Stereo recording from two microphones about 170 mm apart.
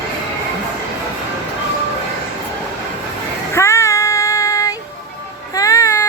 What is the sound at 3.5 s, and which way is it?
Child singing, 15° left (ahead or behind).